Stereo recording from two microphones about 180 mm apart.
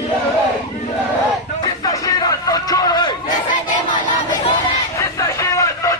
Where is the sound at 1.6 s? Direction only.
20° left (ahead or behind).